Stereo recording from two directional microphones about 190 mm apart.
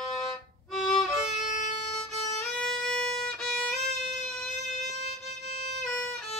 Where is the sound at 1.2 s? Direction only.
40° left (ahead or behind).